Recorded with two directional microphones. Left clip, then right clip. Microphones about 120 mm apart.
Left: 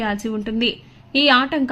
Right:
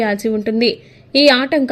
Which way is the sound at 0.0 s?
25° right (ahead or behind).